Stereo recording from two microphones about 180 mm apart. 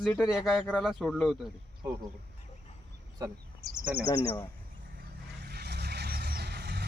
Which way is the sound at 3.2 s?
20° right (ahead or behind).